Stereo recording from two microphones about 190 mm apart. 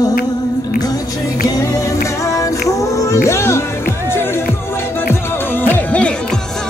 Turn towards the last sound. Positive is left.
turn(degrees=10)  # may be behind; listen again after turning